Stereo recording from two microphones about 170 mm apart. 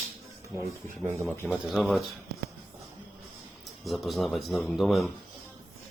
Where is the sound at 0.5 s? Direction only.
15° right (ahead or behind).